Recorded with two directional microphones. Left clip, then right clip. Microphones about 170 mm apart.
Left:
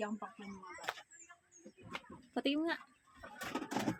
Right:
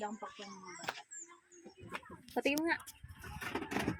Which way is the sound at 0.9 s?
25° right (ahead or behind).